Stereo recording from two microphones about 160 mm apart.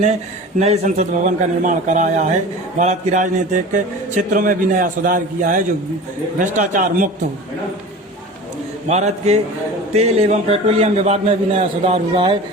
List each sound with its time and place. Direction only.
0.6 s a man's voice: 45° right (ahead or behind)
8.9 s a man's voice: 45° right (ahead or behind)